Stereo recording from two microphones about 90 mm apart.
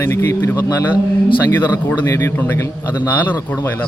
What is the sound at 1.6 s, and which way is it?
A man's voice, 25° left (ahead or behind).